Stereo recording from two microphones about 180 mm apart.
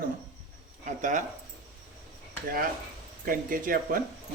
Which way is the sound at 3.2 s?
50° right (ahead or behind).